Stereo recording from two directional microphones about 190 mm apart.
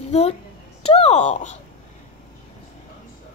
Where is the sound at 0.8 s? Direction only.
30° left (ahead or behind).